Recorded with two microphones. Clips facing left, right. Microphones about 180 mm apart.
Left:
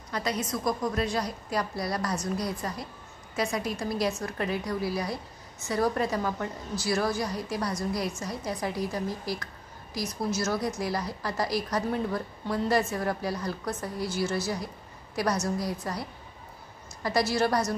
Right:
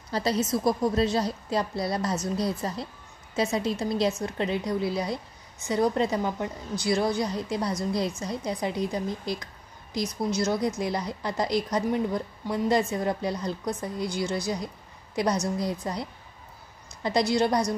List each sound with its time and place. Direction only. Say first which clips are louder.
0.1 s a woman's voice: right 5 dB; 30° right (ahead or behind)